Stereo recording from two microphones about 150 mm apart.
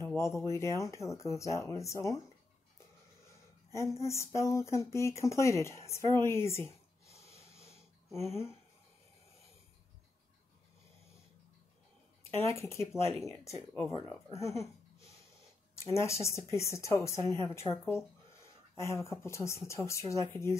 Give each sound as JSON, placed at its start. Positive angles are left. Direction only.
{"t": 0.0, "sound": "speech", "side_deg": 20}
{"t": 3.7, "sound": "speech", "side_deg": 20}
{"t": 7.1, "sound": "snort", "side_deg": 20}
{"t": 12.2, "sound": "speech", "side_deg": 20}